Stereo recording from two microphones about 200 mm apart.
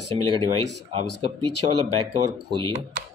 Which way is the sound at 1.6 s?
35° right (ahead or behind).